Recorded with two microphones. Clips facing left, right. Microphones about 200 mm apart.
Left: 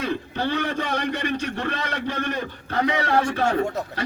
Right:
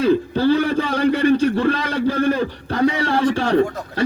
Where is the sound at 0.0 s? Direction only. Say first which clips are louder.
Right 10 dB; 30° right (ahead or behind).